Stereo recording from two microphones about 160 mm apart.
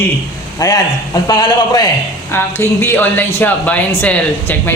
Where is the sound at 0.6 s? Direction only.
20° left (ahead or behind).